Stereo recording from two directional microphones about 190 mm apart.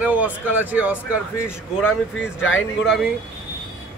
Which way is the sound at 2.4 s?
90° left.